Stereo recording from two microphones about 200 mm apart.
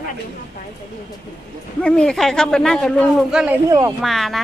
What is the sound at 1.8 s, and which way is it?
Speech, 5° left (ahead or behind).